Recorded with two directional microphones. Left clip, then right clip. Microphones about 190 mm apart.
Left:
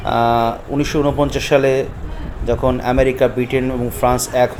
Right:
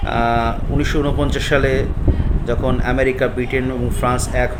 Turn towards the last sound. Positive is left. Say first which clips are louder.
# left 4 dB
turn(degrees=20)  # may be behind; listen again after turning